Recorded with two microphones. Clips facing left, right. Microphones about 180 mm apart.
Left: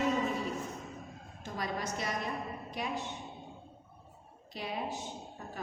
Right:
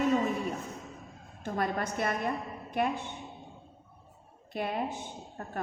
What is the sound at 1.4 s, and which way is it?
A woman's voice, 55° right (ahead or behind).